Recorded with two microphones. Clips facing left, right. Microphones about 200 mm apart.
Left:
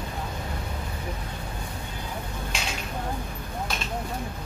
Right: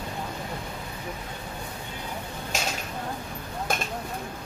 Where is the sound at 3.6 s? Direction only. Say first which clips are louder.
Right 4 dB; 50° right (ahead or behind).